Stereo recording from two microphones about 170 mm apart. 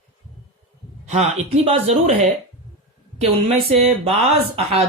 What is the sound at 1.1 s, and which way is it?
Speech, 40° right (ahead or behind).